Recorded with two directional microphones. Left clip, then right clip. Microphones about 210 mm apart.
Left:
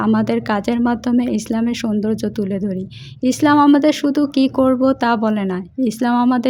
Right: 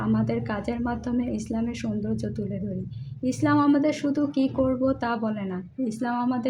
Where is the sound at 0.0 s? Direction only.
40° left (ahead or behind).